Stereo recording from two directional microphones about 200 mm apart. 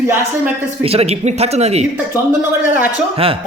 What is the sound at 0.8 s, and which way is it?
Speech, 30° right (ahead or behind).